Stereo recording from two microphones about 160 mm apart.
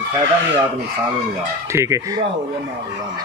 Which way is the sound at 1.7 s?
20° right (ahead or behind).